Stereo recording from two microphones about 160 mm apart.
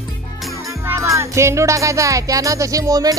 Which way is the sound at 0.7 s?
20° right (ahead or behind).